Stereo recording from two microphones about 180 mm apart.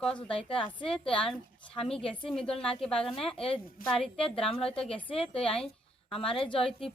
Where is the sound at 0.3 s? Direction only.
30° left (ahead or behind).